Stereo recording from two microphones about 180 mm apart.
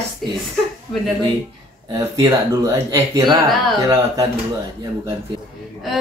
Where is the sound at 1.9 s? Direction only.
20° right (ahead or behind).